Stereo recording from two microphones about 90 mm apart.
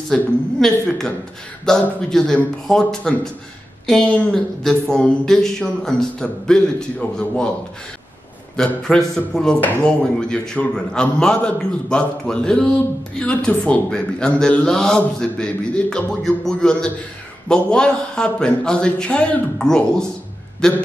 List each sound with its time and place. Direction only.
0.1 s a woman's voice: 5° left (ahead or behind)
8.5 s a man's voice: 10° left (ahead or behind)